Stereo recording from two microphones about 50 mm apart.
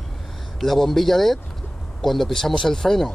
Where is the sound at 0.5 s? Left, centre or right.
Centre.